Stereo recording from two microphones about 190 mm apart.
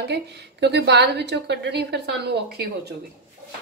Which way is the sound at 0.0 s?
60° right (ahead or behind).